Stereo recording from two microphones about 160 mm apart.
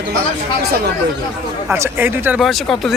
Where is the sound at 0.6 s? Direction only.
80° right.